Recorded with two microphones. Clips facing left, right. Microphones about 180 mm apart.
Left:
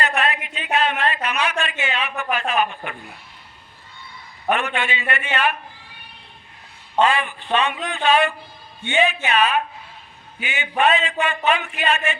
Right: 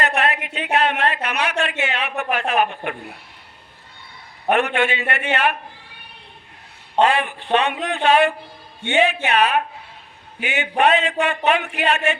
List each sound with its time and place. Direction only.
0.0 s a sound: 60° right (ahead or behind)
4.5 s a man's voice: 60° right (ahead or behind)
7.0 s a man's voice: 65° right (ahead or behind)